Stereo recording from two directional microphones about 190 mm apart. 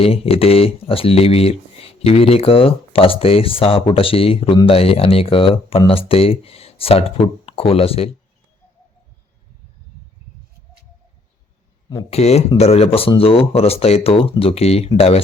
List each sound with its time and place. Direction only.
0.0 s speech: 30° left (ahead or behind)
12.1 s speech: 35° left (ahead or behind)